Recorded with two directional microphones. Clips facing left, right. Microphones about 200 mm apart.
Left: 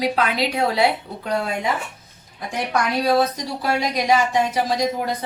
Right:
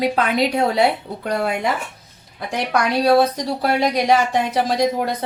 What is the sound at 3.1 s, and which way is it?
Speech, 60° right (ahead or behind).